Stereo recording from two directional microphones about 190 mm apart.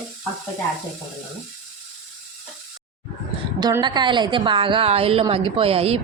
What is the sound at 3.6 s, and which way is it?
A woman's voice, 20° right (ahead or behind).